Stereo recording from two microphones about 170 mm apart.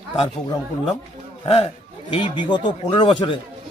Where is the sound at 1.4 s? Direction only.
35° left (ahead or behind).